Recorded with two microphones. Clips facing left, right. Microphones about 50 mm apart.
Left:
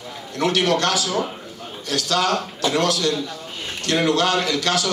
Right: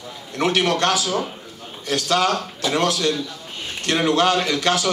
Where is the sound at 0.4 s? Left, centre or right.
Right.